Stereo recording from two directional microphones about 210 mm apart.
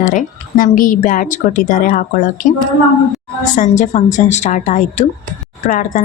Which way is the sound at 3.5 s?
35° left (ahead or behind).